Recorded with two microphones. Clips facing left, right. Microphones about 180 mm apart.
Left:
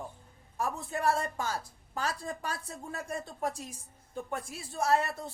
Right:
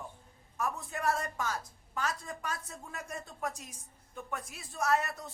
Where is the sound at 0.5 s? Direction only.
30° left (ahead or behind).